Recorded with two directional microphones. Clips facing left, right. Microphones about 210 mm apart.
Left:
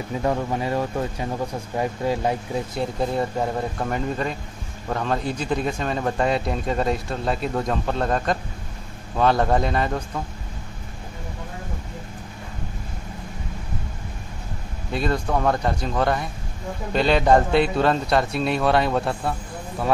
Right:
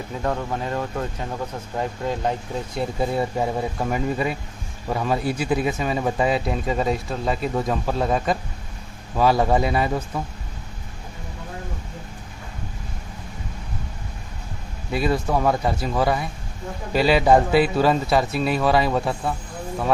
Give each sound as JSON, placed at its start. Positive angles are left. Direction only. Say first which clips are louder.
{"t": 0.2, "sound": "speech", "louder": "left 2 dB", "side_deg": 10}
{"t": 2.8, "sound": "speech", "louder": "right 2 dB", "side_deg": -5}
{"t": 14.9, "sound": "speech", "louder": "right 2 dB", "side_deg": -5}